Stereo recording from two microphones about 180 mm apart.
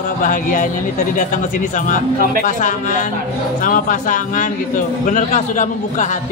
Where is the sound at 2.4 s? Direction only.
45° left (ahead or behind).